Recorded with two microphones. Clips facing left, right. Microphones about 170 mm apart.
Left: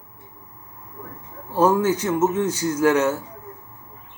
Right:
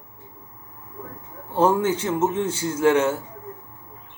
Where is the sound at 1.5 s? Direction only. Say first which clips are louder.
Left 1 dB; 25° right (ahead or behind).